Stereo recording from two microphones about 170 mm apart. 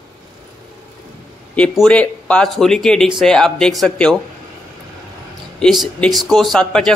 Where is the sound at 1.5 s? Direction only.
5° left (ahead or behind).